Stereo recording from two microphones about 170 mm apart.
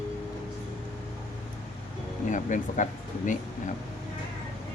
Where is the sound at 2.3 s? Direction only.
45° left (ahead or behind).